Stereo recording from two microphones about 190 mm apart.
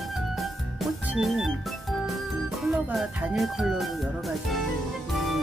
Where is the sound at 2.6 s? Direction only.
Centre (ahead or behind).